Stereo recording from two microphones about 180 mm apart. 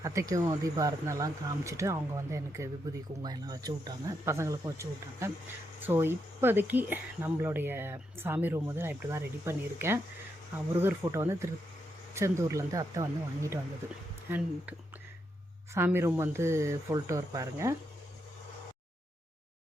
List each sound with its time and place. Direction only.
0.0 s speech: 15° right (ahead or behind)